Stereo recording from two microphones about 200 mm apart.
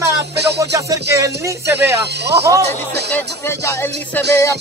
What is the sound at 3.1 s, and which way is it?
Speech, 10° left (ahead or behind).